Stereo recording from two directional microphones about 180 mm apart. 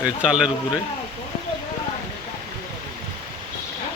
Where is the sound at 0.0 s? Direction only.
5° right (ahead or behind).